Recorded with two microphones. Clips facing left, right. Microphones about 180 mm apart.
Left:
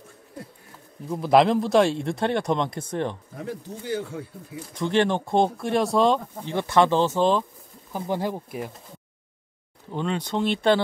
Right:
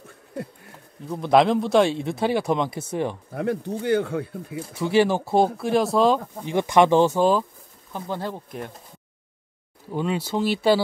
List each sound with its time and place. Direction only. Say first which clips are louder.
1.1 s speech: even; centre (ahead or behind)
3.3 s speech: right 8 dB; 65° right (ahead or behind)
4.6 s speech: right 3 dB; 5° right (ahead or behind)
6.4 s speech: right 3 dB; 15° right (ahead or behind)
7.9 s speech: left 3 dB; 15° left (ahead or behind)
9.8 s speech: right 2 dB; 5° right (ahead or behind)